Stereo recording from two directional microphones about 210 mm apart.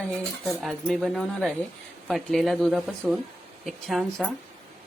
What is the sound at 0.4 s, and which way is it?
A woman's voice, centre (ahead or behind).